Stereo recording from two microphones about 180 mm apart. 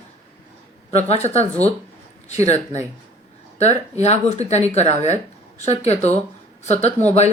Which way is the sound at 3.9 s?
35° left (ahead or behind).